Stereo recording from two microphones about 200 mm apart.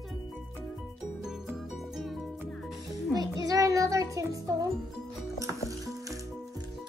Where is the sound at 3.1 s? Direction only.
15° right (ahead or behind).